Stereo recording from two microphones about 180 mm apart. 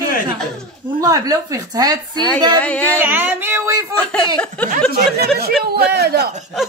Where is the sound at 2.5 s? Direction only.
10° left (ahead or behind).